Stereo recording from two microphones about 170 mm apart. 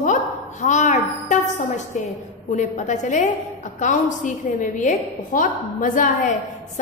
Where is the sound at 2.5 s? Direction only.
45° left (ahead or behind).